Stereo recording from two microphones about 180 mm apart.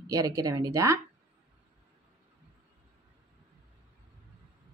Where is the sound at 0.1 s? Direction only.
20° right (ahead or behind).